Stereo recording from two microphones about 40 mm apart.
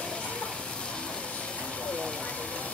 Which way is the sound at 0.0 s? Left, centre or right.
Left.